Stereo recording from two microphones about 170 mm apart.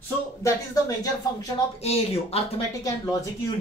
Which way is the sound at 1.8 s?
35° left (ahead or behind).